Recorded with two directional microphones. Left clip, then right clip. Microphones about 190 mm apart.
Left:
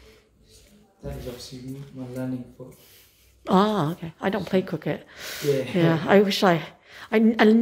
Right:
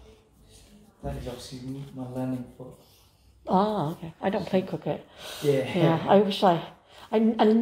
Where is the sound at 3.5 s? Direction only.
40° left (ahead or behind).